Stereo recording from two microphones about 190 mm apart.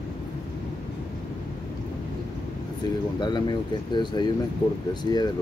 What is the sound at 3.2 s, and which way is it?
Speech, 25° left (ahead or behind).